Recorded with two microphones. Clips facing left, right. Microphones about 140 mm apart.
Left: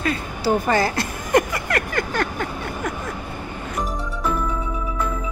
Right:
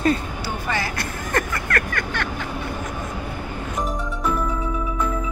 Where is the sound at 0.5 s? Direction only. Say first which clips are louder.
Left 9 dB; 40° left (ahead or behind).